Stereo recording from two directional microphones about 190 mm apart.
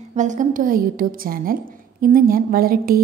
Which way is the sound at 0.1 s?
40° right (ahead or behind).